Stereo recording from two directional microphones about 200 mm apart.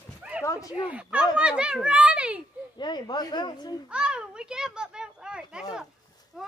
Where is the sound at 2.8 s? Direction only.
20° left (ahead or behind).